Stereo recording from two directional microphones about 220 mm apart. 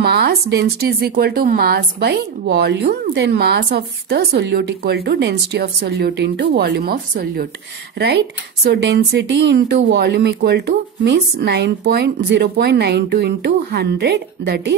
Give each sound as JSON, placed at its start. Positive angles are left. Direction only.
{"t": 0.0, "sound": "a woman's voice", "side_deg": -45}
{"t": 8.6, "sound": "a woman's voice", "side_deg": -50}